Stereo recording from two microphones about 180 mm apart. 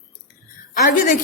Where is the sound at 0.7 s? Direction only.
50° left (ahead or behind).